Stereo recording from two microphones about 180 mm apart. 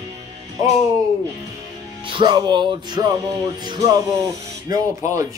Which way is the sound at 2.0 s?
25° right (ahead or behind).